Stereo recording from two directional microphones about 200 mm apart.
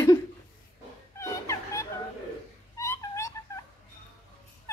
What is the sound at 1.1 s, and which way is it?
Music, 15° left (ahead or behind).